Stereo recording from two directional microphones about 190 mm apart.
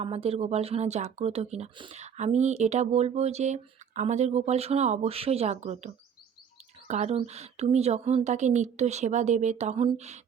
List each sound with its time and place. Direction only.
0.0 s speech: 30° right (ahead or behind)